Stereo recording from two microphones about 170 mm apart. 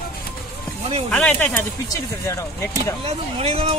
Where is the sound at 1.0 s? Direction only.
10° left (ahead or behind).